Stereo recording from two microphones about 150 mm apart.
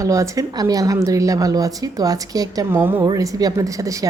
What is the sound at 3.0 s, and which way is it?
Speech, 25° right (ahead or behind).